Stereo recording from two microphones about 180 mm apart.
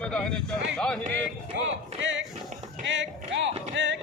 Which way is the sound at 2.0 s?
90° right.